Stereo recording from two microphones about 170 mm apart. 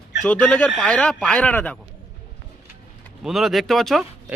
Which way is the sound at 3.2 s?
Centre (ahead or behind).